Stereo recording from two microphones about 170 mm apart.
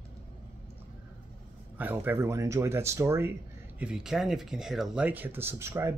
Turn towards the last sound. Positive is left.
turn(degrees=-15)  # may be behind; listen again after turning